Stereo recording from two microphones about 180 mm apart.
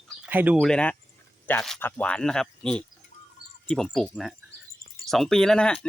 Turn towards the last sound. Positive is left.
turn(degrees=5)  # may be behind; listen again after turning